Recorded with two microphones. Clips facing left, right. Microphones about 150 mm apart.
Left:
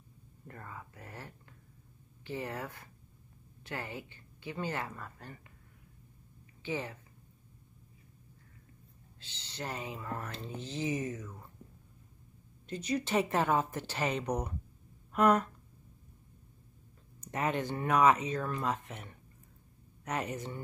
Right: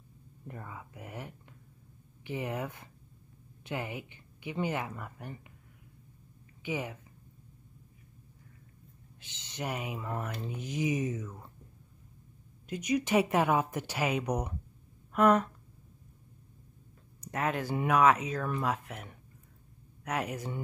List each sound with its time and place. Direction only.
0.5 s speech: 10° right (ahead or behind)
6.6 s speech: 15° right (ahead or behind)
9.2 s speech: 20° right (ahead or behind)
12.6 s speech: 15° right (ahead or behind)
17.2 s speech: centre (ahead or behind)